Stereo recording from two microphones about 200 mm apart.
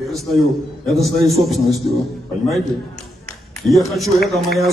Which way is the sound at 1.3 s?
Centre (ahead or behind).